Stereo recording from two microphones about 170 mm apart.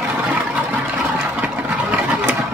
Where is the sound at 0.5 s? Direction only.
10° right (ahead or behind).